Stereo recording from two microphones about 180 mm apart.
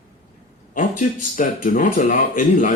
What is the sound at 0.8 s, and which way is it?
Speech, 45° left (ahead or behind).